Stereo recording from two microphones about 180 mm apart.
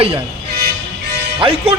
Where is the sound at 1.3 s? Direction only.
30° right (ahead or behind).